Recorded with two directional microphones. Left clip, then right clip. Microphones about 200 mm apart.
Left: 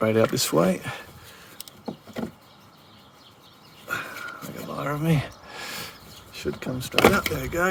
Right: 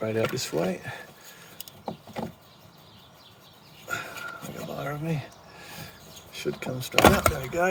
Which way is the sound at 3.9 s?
15° left (ahead or behind).